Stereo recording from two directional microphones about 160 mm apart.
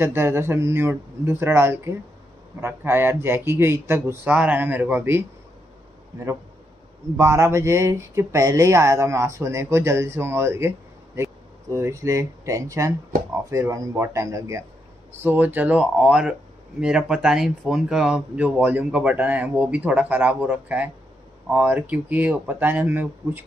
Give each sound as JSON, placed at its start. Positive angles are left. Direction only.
{"t": 0.0, "sound": "speech", "side_deg": -15}
{"t": 7.2, "sound": "speech", "side_deg": -15}
{"t": 11.7, "sound": "speech", "side_deg": -20}